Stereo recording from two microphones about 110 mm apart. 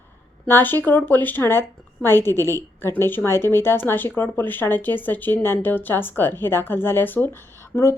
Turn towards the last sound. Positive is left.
turn(degrees=25)  # may be behind; listen again after turning